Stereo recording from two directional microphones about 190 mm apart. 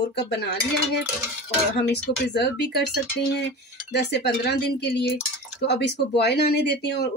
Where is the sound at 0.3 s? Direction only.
60° left (ahead or behind).